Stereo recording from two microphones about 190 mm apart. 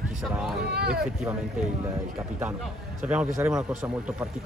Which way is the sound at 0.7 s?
55° right (ahead or behind).